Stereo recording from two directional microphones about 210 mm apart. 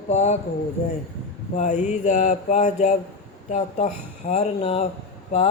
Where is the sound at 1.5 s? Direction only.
35° left (ahead or behind).